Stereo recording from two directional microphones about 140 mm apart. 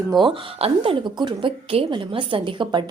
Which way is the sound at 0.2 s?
40° right (ahead or behind).